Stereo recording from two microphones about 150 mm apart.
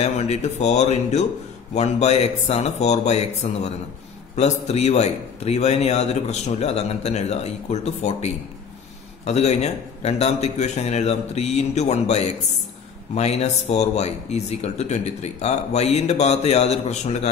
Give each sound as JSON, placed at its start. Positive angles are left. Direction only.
{"t": 0.0, "sound": "speech", "side_deg": 45}
{"t": 9.2, "sound": "speech", "side_deg": 45}